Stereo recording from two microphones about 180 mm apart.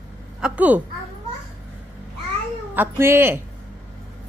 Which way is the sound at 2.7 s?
15° right (ahead or behind).